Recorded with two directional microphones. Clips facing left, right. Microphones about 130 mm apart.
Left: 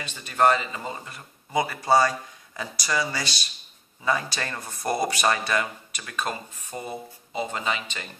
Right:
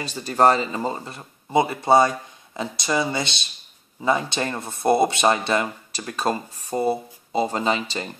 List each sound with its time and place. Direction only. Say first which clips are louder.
0.0 s speech: right 4 dB; 35° right (ahead or behind)